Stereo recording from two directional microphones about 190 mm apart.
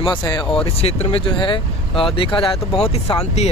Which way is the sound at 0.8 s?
30° left (ahead or behind).